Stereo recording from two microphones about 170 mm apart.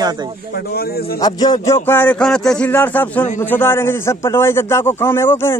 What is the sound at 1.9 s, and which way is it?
A man's voice, 10° left (ahead or behind).